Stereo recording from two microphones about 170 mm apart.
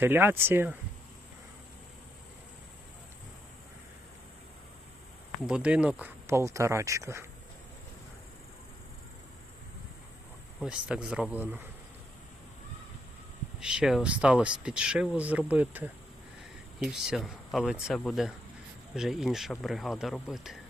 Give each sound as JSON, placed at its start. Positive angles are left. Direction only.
{"t": 0.0, "sound": "speech", "side_deg": -10}
{"t": 5.5, "sound": "speech", "side_deg": -5}
{"t": 10.6, "sound": "speech", "side_deg": -5}
{"t": 13.6, "sound": "speech", "side_deg": -5}